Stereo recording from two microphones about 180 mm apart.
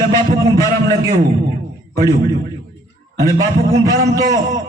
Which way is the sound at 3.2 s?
20° right (ahead or behind).